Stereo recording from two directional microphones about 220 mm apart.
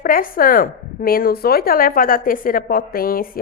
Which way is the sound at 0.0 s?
40° left (ahead or behind).